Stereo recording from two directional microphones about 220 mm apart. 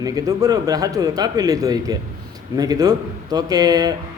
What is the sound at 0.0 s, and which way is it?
A man's voice, 15° right (ahead or behind).